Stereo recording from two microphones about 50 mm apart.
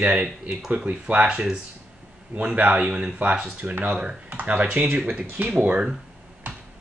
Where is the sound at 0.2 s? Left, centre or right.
Centre.